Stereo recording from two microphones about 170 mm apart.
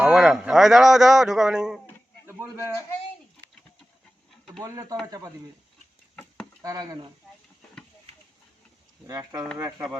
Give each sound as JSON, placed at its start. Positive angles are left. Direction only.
{"t": 0.0, "sound": "a man's voice", "side_deg": -5}
{"t": 2.2, "sound": "a man's voice", "side_deg": -15}
{"t": 4.6, "sound": "speech", "side_deg": -20}
{"t": 6.6, "sound": "speech", "side_deg": -20}
{"t": 9.0, "sound": "speech", "side_deg": -20}